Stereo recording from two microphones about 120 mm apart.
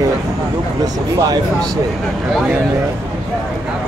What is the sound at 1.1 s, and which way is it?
Speech, 35° right (ahead or behind).